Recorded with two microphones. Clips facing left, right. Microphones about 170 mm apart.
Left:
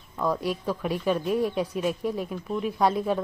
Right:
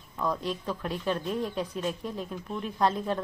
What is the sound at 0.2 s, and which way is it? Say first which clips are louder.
Speech: left 4 dB; 10° left (ahead or behind).